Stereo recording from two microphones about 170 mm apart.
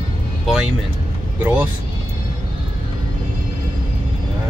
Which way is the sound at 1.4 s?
10° right (ahead or behind).